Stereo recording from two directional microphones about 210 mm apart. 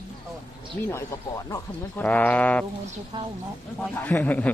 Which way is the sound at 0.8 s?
15° left (ahead or behind).